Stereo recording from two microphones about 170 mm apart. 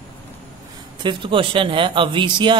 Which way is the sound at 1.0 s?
30° right (ahead or behind).